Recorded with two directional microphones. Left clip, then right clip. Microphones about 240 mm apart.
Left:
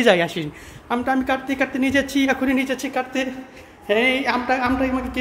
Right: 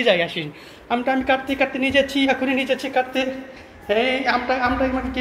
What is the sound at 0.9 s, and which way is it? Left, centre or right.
A man's voice, centre.